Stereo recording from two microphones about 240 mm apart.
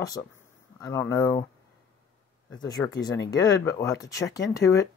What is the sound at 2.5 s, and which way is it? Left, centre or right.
Speech, centre.